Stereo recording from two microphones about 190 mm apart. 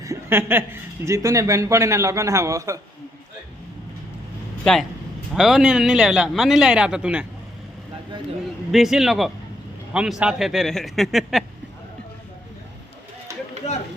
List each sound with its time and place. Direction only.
0.0 s a man's voice: 15° right (ahead or behind)
4.6 s a man's voice: centre (ahead or behind)
8.7 s a man's voice: centre (ahead or behind)